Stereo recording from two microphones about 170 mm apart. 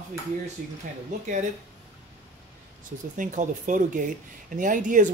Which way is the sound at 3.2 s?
50° right (ahead or behind).